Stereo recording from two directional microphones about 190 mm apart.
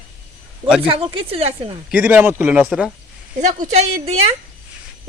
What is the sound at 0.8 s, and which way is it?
Speech, 30° right (ahead or behind).